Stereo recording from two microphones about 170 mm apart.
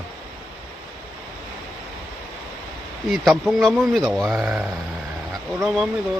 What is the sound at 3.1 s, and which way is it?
Speech, centre (ahead or behind).